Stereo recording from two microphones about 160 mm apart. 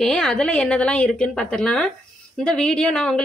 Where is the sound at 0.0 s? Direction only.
5° left (ahead or behind).